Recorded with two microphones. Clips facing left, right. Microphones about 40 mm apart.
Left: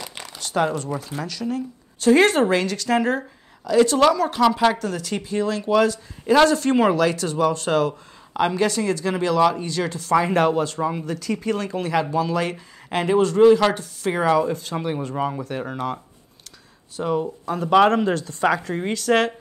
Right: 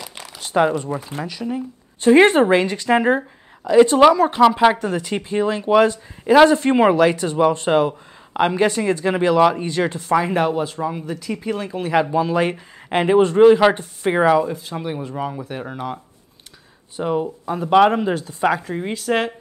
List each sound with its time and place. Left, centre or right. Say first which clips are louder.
0.0 s a sound: even; centre
0.4 s speech: right 4 dB; centre
10.1 s speech: left 1 dB; centre
14.3 s speech: right 2 dB; centre
16.9 s speech: right 2 dB; centre